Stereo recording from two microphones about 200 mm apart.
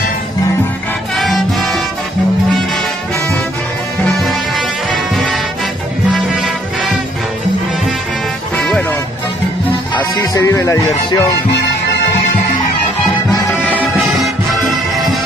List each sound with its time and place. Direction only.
1.1 s music: centre (ahead or behind)
4.0 s music: centre (ahead or behind)
8.5 s music: centre (ahead or behind)
10.1 s music: 15° left (ahead or behind)
13.7 s music: centre (ahead or behind)